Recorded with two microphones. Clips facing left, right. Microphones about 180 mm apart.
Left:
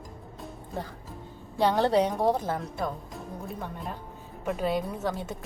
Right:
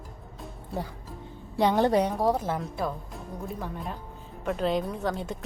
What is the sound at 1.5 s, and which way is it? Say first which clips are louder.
A woman's voice: right 1 dB; 15° right (ahead or behind).